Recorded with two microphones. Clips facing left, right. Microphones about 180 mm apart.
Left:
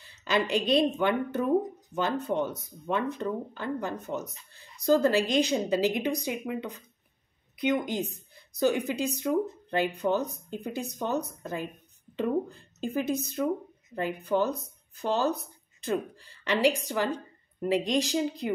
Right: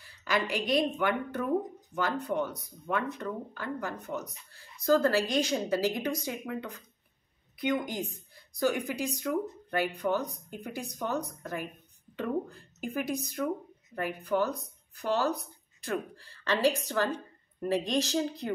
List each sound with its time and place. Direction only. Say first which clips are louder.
0.0 s a woman's voice: left 3 dB; 25° left (ahead or behind)